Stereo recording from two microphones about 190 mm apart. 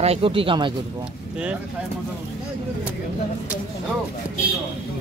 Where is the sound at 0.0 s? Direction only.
30° right (ahead or behind).